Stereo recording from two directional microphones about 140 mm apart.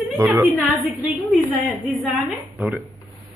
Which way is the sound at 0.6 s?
5° right (ahead or behind).